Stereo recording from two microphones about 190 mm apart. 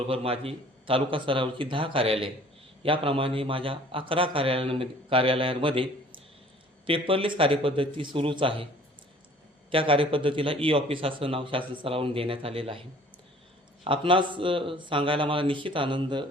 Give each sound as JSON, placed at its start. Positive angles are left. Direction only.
{"t": 0.1, "sound": "a man's voice", "side_deg": -30}
{"t": 9.7, "sound": "a man's voice", "side_deg": -30}
{"t": 13.8, "sound": "a man's voice", "side_deg": -25}